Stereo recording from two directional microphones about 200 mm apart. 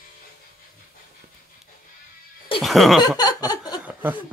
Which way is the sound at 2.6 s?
Centre (ahead or behind).